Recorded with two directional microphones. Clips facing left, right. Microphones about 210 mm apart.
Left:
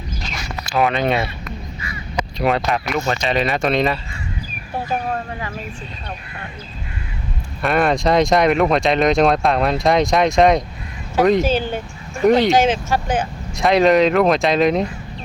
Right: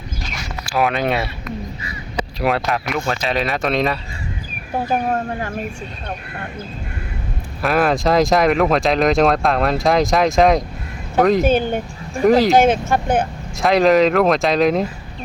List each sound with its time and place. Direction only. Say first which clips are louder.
0.6 s speech: left 1 dB; 5° right (ahead or behind)
2.4 s speech: left 1 dB; centre (ahead or behind)
4.9 s speech: right 4 dB; 45° right (ahead or behind)
7.6 s speech: even; centre (ahead or behind)
11.4 s speech: right 3 dB; 55° right (ahead or behind)
12.2 s speech: right 1 dB; centre (ahead or behind)
12.5 s speech: right 2 dB; 55° right (ahead or behind)
13.6 s speech: even; centre (ahead or behind)